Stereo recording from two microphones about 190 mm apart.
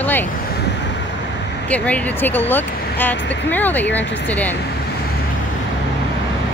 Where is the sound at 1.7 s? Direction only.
5° left (ahead or behind).